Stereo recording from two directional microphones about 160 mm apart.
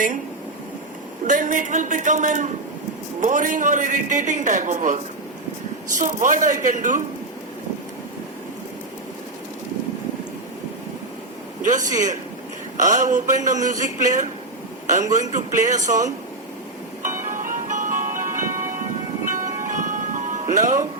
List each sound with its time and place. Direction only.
1.3 s a man's voice: 55° right (ahead or behind)
6.0 s speech: 55° right (ahead or behind)
11.6 s a man's voice: 50° right (ahead or behind)
17.0 s music: 55° right (ahead or behind)